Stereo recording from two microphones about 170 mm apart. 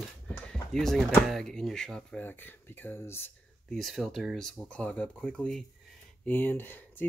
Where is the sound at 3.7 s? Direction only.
Centre (ahead or behind).